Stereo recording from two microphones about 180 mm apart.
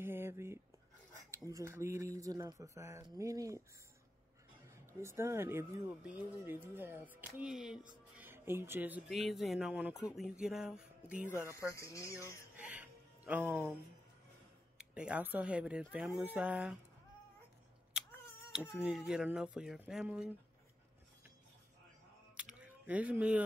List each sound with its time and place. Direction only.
0.0 s a sound: 15° right (ahead or behind)
1.4 s speech: 15° right (ahead or behind)
5.0 s speech: 15° right (ahead or behind)
11.2 s speech: 15° left (ahead or behind)
12.5 s music: 10° right (ahead or behind)
14.8 s speech: 5° right (ahead or behind)
18.5 s speech: 5° right (ahead or behind)
22.6 s speech: 10° right (ahead or behind)